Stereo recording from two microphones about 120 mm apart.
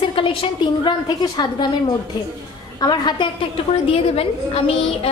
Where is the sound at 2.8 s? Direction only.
35° left (ahead or behind).